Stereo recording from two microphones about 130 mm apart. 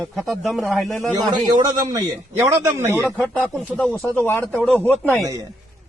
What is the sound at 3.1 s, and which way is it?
Speech, 10° left (ahead or behind).